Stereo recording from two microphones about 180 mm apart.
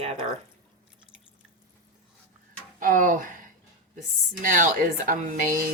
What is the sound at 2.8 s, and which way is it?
Speech, 45° right (ahead or behind).